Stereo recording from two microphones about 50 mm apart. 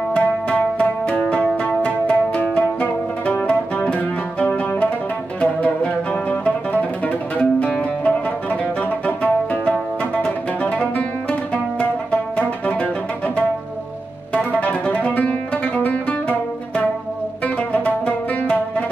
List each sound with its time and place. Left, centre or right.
0.1 s music: left
14.3 s music: left